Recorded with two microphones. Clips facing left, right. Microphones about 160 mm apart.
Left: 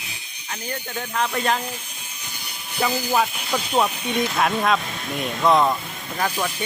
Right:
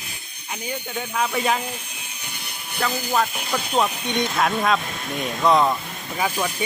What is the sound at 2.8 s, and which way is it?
Speech, 10° left (ahead or behind).